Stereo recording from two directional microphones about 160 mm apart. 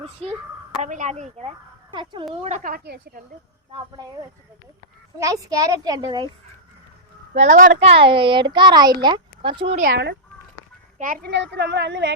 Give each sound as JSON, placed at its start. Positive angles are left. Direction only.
{"t": 0.0, "sound": "speech", "side_deg": -40}
{"t": 0.8, "sound": "speech", "side_deg": -50}
{"t": 1.9, "sound": "speech", "side_deg": -30}
{"t": 2.6, "sound": "a woman's voice", "side_deg": -75}
{"t": 5.2, "sound": "speech", "side_deg": -20}
{"t": 7.3, "sound": "speech", "side_deg": -55}
{"t": 7.9, "sound": "speech", "side_deg": -35}
{"t": 10.9, "sound": "a child's voice", "side_deg": -60}